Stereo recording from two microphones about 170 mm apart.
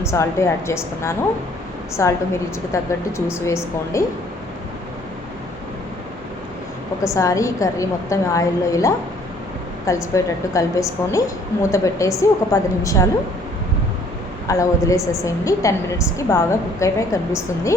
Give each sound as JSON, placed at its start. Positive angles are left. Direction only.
{"t": 0.0, "sound": "a woman's voice", "side_deg": 15}
{"t": 7.0, "sound": "a woman's voice", "side_deg": 20}
{"t": 14.4, "sound": "a woman's voice", "side_deg": 20}